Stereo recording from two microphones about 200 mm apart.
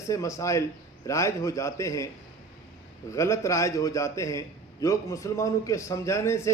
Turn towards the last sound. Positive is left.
turn(degrees=15)  # may be behind; listen again after turning